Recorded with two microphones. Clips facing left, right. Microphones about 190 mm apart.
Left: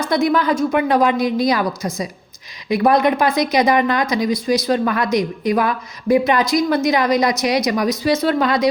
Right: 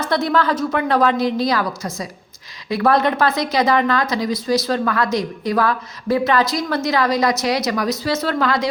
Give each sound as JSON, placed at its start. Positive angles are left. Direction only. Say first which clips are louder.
{"t": 0.1, "sound": "speech", "louder": "left 2 dB", "side_deg": 15}